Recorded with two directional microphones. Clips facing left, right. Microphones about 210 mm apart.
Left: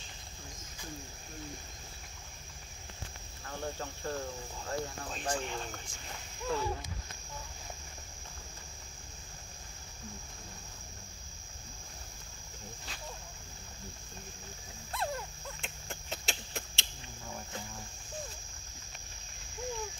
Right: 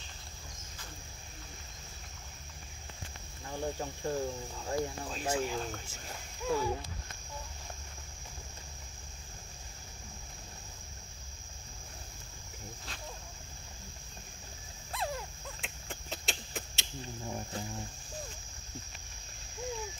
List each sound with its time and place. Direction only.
3.4 s speech: 15° right (ahead or behind)
5.1 s speech: 5° right (ahead or behind)
14.9 s a sound: centre (ahead or behind)